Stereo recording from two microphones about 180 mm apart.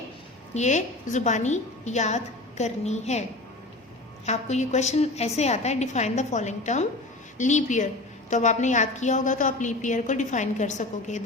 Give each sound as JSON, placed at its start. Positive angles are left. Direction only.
{"t": 0.5, "sound": "a woman's voice", "side_deg": 40}
{"t": 4.3, "sound": "a woman's voice", "side_deg": 40}